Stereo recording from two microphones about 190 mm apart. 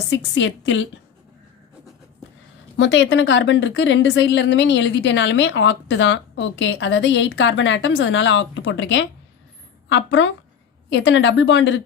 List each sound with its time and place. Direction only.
0.1 s speech: 75° left (ahead or behind)
2.7 s speech: 75° left (ahead or behind)